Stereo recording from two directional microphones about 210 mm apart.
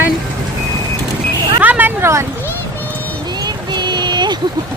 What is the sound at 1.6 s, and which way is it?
Speech, 10° right (ahead or behind).